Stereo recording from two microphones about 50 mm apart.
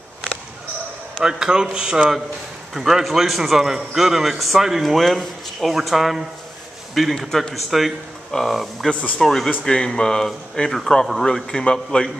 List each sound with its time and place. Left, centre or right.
1.1 s a man's voice: centre